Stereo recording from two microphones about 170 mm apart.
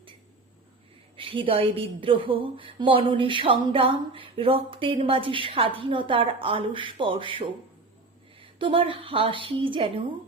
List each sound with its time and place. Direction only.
1.1 s a woman's voice: 30° right (ahead or behind)